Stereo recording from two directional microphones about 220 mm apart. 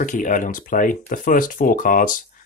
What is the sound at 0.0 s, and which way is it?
Speech, 35° left (ahead or behind).